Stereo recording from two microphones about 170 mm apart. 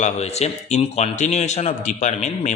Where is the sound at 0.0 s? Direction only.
40° left (ahead or behind).